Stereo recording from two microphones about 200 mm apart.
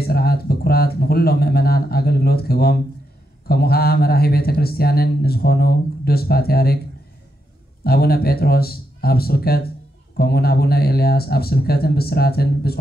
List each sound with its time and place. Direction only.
0.0 s speech: 50° left (ahead or behind)
7.8 s speech: 50° left (ahead or behind)